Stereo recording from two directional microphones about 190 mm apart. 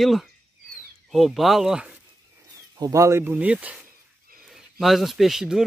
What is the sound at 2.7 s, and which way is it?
Speech, 20° right (ahead or behind).